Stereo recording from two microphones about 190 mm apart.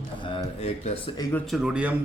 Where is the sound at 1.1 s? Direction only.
20° left (ahead or behind).